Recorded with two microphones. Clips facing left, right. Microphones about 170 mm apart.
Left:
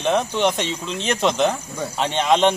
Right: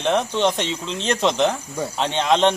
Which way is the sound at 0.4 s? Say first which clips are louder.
Even; 10° left (ahead or behind).